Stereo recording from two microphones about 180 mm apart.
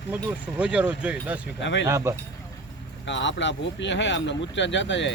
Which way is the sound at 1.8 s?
15° right (ahead or behind).